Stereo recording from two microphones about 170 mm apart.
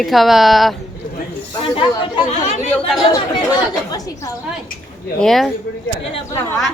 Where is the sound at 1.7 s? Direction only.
35° left (ahead or behind).